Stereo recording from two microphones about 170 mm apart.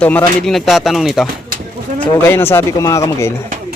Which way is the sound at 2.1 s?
15° left (ahead or behind).